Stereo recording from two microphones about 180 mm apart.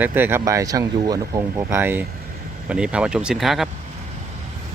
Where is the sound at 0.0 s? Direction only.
10° right (ahead or behind).